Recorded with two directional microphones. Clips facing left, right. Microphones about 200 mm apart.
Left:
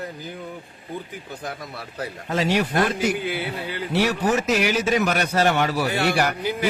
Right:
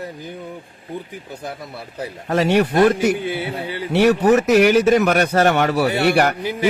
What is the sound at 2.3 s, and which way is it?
Speech, 60° right (ahead or behind).